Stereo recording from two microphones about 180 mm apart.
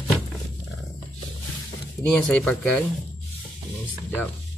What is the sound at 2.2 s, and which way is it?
Speech, 5° left (ahead or behind).